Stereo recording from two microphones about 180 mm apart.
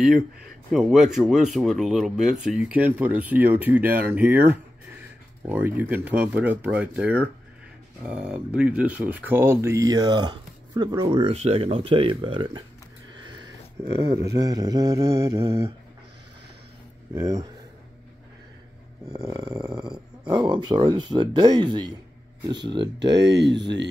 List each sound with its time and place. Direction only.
0.7 s speech: centre (ahead or behind); by 12.6 s 25° right (ahead or behind)
13.1 s a sound: 25° right (ahead or behind)
14.3 s speech: 20° right (ahead or behind)
17.1 s speech: 20° right (ahead or behind)
19.1 s speech: 20° right (ahead or behind)
19.7 s speech: 5° right (ahead or behind)
20.2 s speech: 25° right (ahead or behind)
22.9 s speech: 75° right (ahead or behind)